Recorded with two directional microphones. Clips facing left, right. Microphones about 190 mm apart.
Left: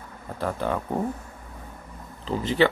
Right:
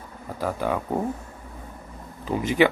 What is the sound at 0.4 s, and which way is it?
Speech, 10° right (ahead or behind).